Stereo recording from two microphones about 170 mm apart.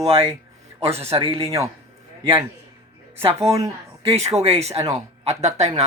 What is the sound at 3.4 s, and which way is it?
Speech, 20° right (ahead or behind).